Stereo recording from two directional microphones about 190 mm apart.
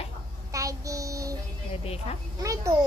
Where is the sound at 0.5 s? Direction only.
15° right (ahead or behind).